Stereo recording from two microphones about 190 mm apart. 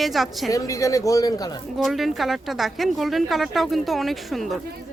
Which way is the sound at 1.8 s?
Centre (ahead or behind).